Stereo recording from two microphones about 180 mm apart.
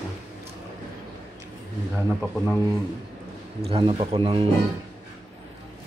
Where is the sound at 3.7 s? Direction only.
30° right (ahead or behind).